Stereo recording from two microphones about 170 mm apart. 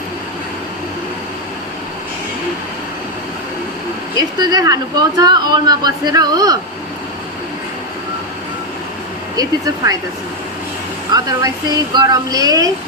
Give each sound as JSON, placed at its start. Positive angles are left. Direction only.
{"t": 4.4, "sound": "speech", "side_deg": -20}
{"t": 9.3, "sound": "speech", "side_deg": -20}
{"t": 11.1, "sound": "speech", "side_deg": -20}